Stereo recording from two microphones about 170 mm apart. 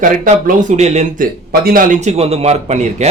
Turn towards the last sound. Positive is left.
turn(degrees=-40)  # may be behind; listen again after turning